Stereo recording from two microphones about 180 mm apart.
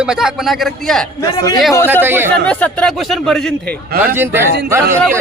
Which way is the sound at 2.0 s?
10° right (ahead or behind).